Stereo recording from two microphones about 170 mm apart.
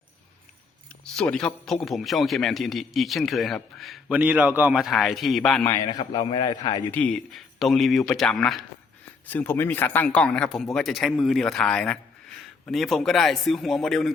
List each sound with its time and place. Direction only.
1.0 s a man's voice: 5° left (ahead or behind)
5.6 s a man's voice: 25° left (ahead or behind)
6.9 s a man's voice: 5° left (ahead or behind)